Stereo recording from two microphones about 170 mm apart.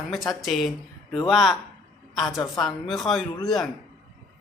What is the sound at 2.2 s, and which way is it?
Speech, 20° left (ahead or behind).